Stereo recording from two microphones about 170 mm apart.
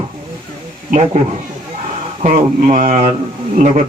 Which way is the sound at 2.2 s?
40° right (ahead or behind).